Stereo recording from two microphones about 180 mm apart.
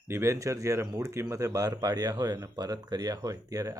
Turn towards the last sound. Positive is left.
turn(degrees=-20)  # may be behind; listen again after turning